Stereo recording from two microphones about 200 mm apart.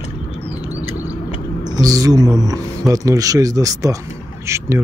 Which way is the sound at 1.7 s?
20° right (ahead or behind).